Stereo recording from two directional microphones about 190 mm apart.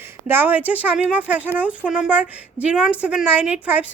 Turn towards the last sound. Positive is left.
turn(degrees=-10)  # may be behind; listen again after turning